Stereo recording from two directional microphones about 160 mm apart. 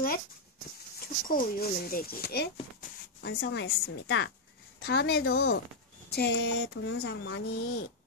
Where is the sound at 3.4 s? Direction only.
90° left.